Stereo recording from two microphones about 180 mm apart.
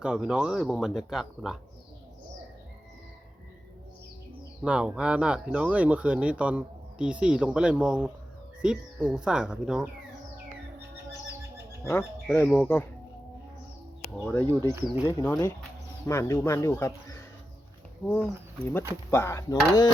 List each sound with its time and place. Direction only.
0.0 s speech: 5° right (ahead or behind)
4.6 s speech: 5° right (ahead or behind)
11.9 s speech: 15° left (ahead or behind)
14.3 s speech: 10° left (ahead or behind)